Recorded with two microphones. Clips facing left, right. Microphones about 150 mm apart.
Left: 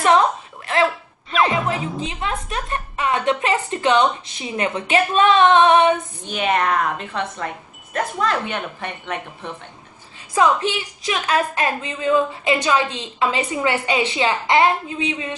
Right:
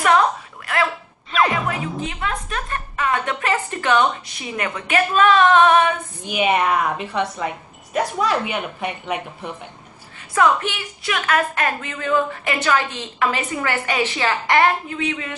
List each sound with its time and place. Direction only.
1.3 s music: centre (ahead or behind)
2.0 s a woman's voice: 25° left (ahead or behind)
6.2 s speech: 10° right (ahead or behind)
10.3 s a woman's voice: 20° left (ahead or behind)